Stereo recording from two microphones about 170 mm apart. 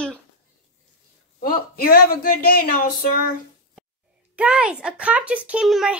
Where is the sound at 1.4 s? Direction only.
60° left (ahead or behind).